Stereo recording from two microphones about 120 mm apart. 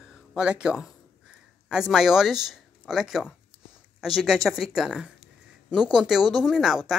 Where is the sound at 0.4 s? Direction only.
5° right (ahead or behind).